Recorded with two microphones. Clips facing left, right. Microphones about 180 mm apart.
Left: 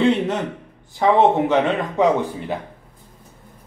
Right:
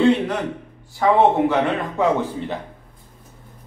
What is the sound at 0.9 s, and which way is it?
Speech, 20° left (ahead or behind).